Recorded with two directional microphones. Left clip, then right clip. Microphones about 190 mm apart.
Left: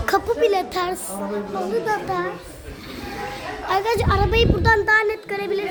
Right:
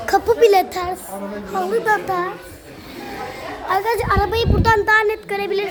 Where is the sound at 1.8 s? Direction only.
15° right (ahead or behind).